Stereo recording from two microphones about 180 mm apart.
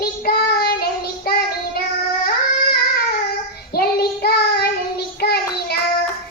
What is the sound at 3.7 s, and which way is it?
Child singing, 60° left (ahead or behind).